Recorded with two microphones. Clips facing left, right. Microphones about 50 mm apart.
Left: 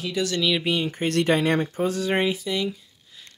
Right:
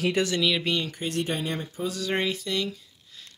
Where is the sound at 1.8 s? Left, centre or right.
Left.